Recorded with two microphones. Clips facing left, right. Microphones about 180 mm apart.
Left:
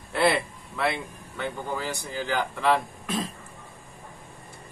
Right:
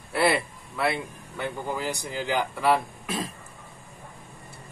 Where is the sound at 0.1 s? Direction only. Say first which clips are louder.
Even; 5° right (ahead or behind).